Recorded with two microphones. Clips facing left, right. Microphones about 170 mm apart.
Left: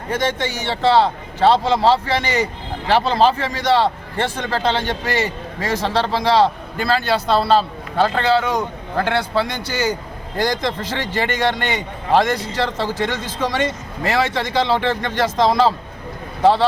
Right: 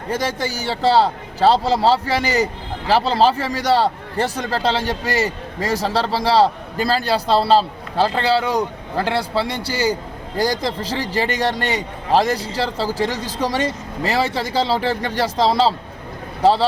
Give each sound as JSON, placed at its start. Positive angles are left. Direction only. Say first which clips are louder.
{"t": 0.1, "sound": "a man's voice", "louder": "left 1 dB", "side_deg": -35}
{"t": 5.8, "sound": "a man's voice", "louder": "left 2 dB", "side_deg": -5}
{"t": 6.3, "sound": "a man's voice", "louder": "right 1 dB", "side_deg": -35}